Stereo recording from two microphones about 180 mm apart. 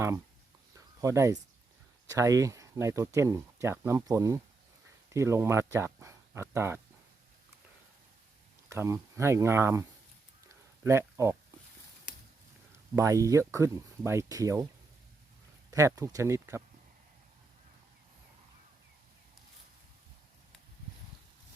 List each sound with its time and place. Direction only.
1.0 s speech: 15° right (ahead or behind)
8.7 s speech: 15° right (ahead or behind)
10.8 s speech: 15° right (ahead or behind)
13.0 s speech: 20° right (ahead or behind)
15.7 s speech: 20° right (ahead or behind)